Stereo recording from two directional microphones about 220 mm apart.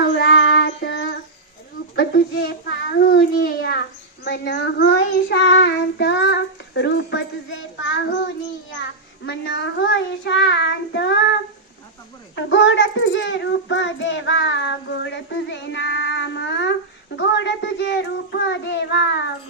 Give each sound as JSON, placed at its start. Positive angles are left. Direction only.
{"t": 0.2, "sound": "child singing", "side_deg": 55}
{"t": 2.0, "sound": "a child's voice", "side_deg": 45}
{"t": 9.2, "sound": "a child's voice", "side_deg": 55}
{"t": 12.5, "sound": "a child's voice", "side_deg": 55}